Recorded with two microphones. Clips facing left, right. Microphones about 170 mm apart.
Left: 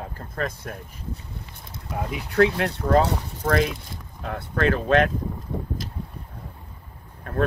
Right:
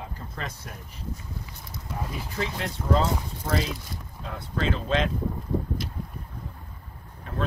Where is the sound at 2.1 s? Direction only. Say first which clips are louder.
Left 14 dB; 65° left (ahead or behind).